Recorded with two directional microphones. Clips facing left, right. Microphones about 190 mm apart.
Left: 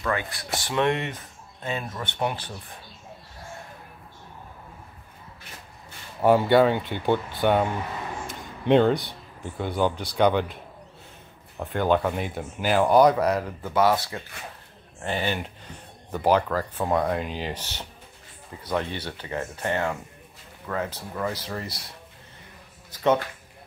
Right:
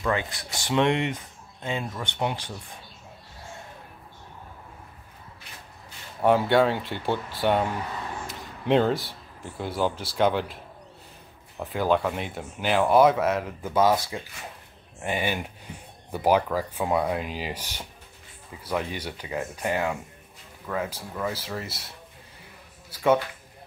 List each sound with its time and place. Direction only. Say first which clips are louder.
0.0 s speech: right 1 dB; 20° right (ahead or behind)
6.2 s speech: left 2 dB; centre (ahead or behind)
11.6 s speech: left 1 dB; centre (ahead or behind)
15.0 s speech: even; 10° right (ahead or behind)
22.8 s a sound: even; 10° right (ahead or behind)